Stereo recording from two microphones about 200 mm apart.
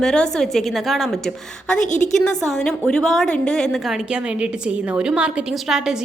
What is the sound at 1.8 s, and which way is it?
Speech, 35° left (ahead or behind).